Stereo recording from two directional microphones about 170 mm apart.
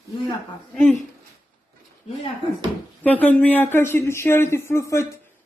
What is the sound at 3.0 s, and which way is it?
Speech, 10° left (ahead or behind).